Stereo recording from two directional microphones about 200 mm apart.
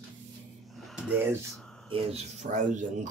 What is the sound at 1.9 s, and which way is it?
Speech, 30° right (ahead or behind).